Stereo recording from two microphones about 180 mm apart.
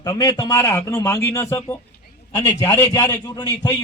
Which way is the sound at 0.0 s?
20° left (ahead or behind).